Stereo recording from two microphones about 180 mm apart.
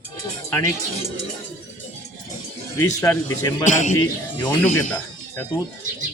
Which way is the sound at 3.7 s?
45° left (ahead or behind).